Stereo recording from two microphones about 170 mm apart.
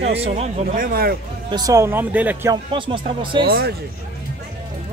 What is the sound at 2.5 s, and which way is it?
Speech, 30° right (ahead or behind).